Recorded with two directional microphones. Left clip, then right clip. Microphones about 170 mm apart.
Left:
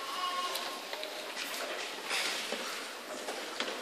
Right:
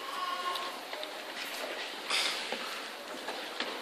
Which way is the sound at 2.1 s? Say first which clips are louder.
Right 3 dB; 45° right (ahead or behind).